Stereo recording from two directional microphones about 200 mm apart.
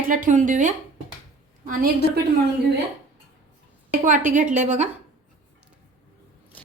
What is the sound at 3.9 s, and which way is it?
Speech, 40° right (ahead or behind).